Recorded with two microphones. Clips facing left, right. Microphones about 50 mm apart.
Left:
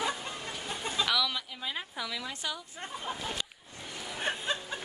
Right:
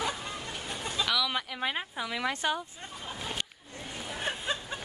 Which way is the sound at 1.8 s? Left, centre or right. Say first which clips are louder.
Right 2 dB; right.